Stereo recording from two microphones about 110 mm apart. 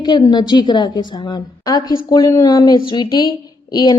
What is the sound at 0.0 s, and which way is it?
A woman's voice, 40° left (ahead or behind).